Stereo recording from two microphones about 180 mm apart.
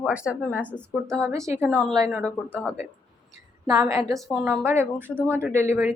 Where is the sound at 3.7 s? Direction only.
20° right (ahead or behind).